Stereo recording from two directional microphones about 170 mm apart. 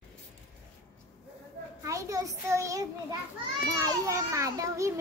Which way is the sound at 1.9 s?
20° right (ahead or behind).